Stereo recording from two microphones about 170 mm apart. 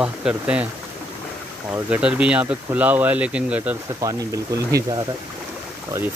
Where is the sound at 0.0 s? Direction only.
5° right (ahead or behind).